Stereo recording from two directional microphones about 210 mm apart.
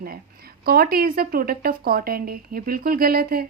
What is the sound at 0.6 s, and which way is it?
A woman's voice, 45° right (ahead or behind).